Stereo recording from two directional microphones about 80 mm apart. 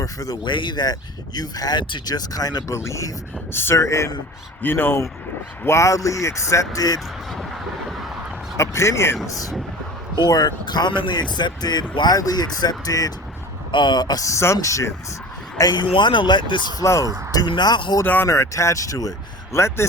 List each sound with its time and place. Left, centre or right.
0.0 s speech: left
0.4 s speech: left
2.6 s speech: left
4.6 s speech: left
5.6 s speech: left
8.5 s speech: left
13.7 s speech: left
15.7 s speech: left
16.8 s speech: left
17.3 s speech: left
18.0 s speech: left
18.3 s speech: left
19.5 s speech: left